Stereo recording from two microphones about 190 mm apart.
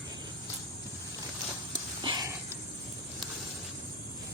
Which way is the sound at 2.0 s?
20° right (ahead or behind).